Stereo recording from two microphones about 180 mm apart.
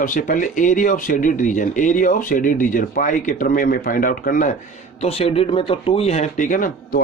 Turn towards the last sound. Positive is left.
turn(degrees=50)  # may be behind; listen again after turning